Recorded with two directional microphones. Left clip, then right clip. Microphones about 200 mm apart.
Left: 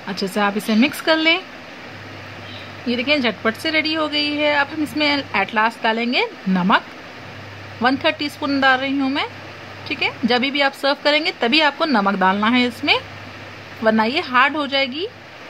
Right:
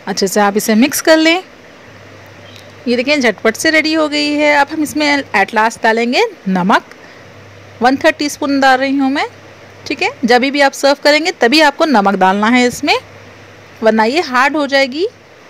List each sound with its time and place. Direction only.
0.0 s speech: 30° right (ahead or behind)
2.9 s speech: 35° right (ahead or behind)
7.8 s a woman's voice: 30° right (ahead or behind)